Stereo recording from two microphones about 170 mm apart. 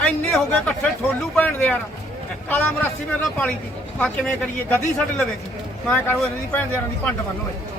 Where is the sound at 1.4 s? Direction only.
10° left (ahead or behind).